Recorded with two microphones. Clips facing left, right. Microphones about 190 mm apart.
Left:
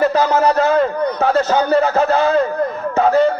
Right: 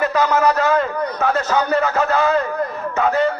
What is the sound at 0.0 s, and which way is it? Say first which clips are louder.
A man's voice: left 2 dB; 35° left (ahead or behind).